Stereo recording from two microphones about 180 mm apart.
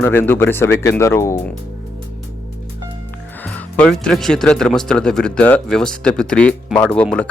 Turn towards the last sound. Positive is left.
turn(degrees=5)  # may be behind; listen again after turning